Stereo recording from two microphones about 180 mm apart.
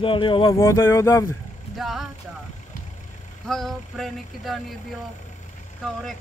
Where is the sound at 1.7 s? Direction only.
Centre (ahead or behind).